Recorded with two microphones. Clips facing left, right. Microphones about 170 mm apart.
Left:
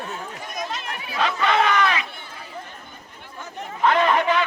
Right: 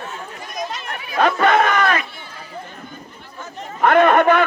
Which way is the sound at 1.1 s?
50° right (ahead or behind).